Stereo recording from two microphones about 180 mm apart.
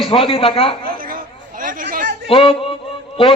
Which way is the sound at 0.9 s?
50° right (ahead or behind).